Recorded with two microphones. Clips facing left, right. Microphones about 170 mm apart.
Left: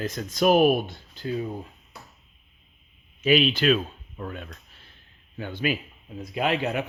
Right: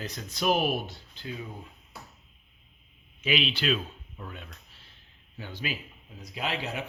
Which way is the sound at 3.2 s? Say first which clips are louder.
Left 8 dB; 45° left (ahead or behind).